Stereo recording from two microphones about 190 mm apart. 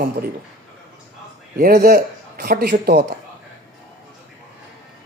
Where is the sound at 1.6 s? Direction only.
50° right (ahead or behind).